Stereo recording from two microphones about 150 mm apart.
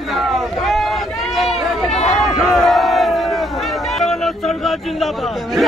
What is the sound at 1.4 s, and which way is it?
Run, centre (ahead or behind).